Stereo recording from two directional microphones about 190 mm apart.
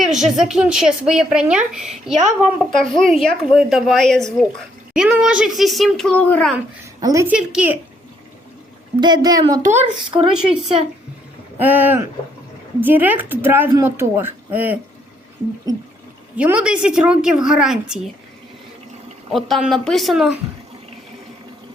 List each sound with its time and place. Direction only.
0.0 s speech: centre (ahead or behind)
2.1 s a woman's voice: 40° right (ahead or behind)
2.7 s speech: centre (ahead or behind)
7.0 s a woman's voice: 15° right (ahead or behind)
7.3 s speech: 5° right (ahead or behind)
9.0 s speech: 20° right (ahead or behind)
10.3 s a woman's voice: 5° right (ahead or behind)
16.4 s speech: 5° right (ahead or behind)
19.3 s speech: centre (ahead or behind)